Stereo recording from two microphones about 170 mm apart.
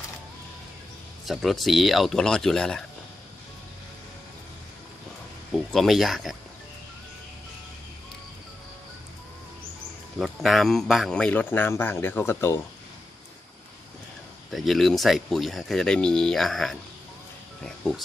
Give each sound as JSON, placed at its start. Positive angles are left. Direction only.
{"t": 1.2, "sound": "speech", "side_deg": 0}
{"t": 5.5, "sound": "speech", "side_deg": 0}
{"t": 10.1, "sound": "speech", "side_deg": 0}
{"t": 14.5, "sound": "speech", "side_deg": 0}